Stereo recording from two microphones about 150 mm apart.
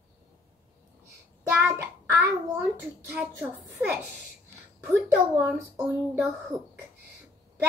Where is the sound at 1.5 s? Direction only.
10° right (ahead or behind).